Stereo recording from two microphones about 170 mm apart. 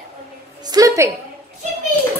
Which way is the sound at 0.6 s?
20° right (ahead or behind).